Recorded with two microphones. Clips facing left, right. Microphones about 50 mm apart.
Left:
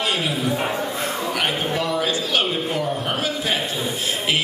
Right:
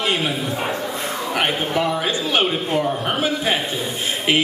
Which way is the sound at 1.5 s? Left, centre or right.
Centre.